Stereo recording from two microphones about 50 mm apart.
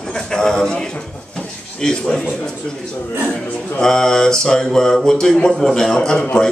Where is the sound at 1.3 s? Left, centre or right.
Centre.